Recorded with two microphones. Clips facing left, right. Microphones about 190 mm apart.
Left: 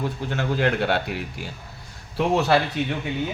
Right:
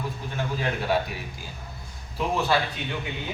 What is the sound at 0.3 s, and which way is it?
A man's voice, 75° left (ahead or behind).